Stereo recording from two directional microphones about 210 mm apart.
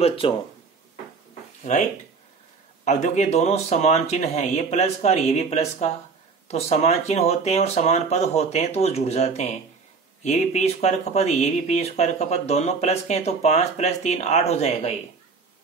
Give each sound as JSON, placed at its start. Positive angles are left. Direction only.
{"t": 0.0, "sound": "speech", "side_deg": 25}
{"t": 1.6, "sound": "speech", "side_deg": 35}